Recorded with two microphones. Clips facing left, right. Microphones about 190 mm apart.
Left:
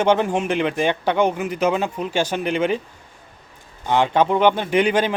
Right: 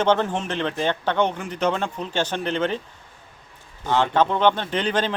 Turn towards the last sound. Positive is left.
turn(degrees=10)  # may be behind; listen again after turning